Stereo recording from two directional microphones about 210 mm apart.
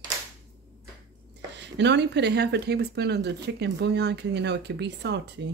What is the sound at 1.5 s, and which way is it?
Speech, 55° right (ahead or behind).